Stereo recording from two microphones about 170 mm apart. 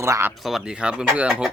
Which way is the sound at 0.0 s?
15° right (ahead or behind).